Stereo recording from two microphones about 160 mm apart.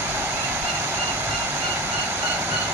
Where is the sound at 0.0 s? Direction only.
10° right (ahead or behind).